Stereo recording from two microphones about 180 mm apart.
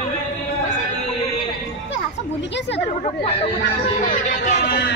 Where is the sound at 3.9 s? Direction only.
45° left (ahead or behind).